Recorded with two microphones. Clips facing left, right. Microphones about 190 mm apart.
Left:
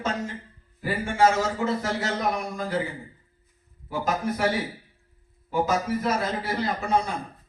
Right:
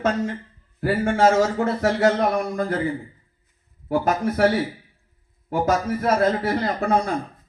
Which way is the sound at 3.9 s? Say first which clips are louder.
Right 5 dB; 55° right (ahead or behind).